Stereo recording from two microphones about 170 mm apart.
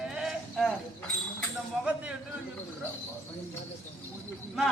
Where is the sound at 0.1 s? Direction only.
5° right (ahead or behind).